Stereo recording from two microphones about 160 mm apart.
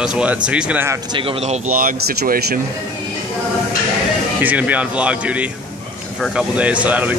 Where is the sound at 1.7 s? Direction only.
65° right (ahead or behind).